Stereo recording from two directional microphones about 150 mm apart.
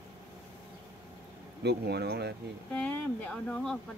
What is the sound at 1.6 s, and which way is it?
Speech, 90° right.